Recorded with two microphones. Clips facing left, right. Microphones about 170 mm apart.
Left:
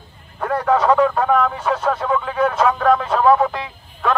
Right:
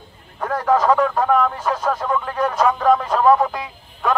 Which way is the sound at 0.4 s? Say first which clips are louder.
Left 2 dB; 5° left (ahead or behind).